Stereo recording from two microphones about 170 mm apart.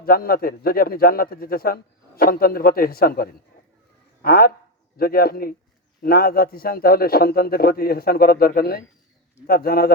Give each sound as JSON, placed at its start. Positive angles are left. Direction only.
{"t": 0.0, "sound": "a man's voice", "side_deg": 60}